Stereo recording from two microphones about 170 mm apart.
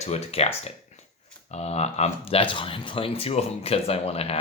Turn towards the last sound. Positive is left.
turn(degrees=35)  # may be behind; listen again after turning